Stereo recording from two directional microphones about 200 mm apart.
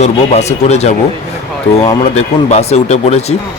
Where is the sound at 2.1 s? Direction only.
35° left (ahead or behind).